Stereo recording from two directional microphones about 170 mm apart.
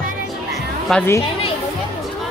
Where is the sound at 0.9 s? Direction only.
5° left (ahead or behind).